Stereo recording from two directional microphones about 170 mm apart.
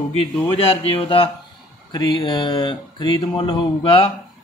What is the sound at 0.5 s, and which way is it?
Speech, 35° left (ahead or behind).